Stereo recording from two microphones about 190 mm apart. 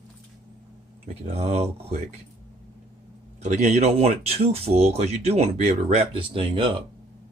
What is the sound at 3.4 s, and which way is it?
Speech, 40° right (ahead or behind).